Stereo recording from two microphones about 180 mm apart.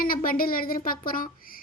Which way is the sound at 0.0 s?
55° left (ahead or behind).